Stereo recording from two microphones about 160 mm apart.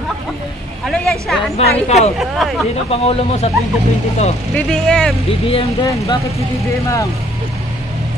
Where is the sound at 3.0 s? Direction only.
40° left (ahead or behind).